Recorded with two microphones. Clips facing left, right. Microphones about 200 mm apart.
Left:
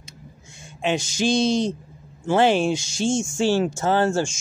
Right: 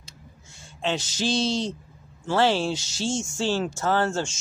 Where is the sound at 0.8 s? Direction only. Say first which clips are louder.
Left 4 dB; 15° left (ahead or behind).